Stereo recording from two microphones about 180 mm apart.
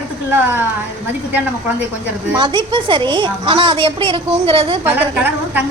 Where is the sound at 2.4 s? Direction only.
25° right (ahead or behind).